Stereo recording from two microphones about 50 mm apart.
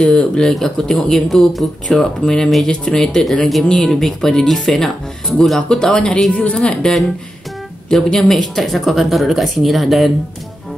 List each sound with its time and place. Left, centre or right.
0.0 s speech: left
0.4 s speech: centre
7.9 s speech: centre